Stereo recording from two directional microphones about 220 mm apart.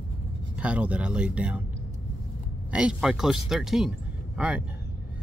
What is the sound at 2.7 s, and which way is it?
Speech, 5° right (ahead or behind).